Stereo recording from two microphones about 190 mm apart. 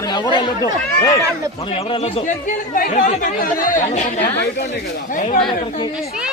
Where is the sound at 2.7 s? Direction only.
45° left (ahead or behind).